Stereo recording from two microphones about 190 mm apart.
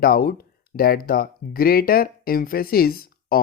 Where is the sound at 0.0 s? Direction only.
50° left (ahead or behind).